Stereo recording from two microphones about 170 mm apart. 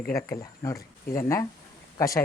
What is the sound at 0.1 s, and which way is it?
Speech, 15° left (ahead or behind).